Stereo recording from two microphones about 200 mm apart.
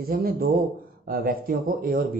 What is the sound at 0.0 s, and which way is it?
Speech, 50° right (ahead or behind).